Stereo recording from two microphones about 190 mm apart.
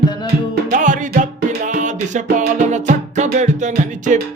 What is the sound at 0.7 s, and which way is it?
Music, 45° right (ahead or behind).